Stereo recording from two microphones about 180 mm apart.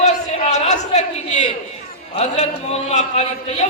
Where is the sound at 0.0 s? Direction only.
40° left (ahead or behind).